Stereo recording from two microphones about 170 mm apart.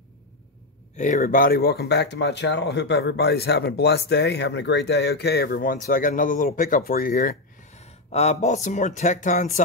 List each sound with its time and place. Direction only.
0.9 s speech: 45° left (ahead or behind)